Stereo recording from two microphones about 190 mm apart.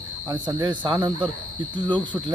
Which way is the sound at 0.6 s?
25° right (ahead or behind).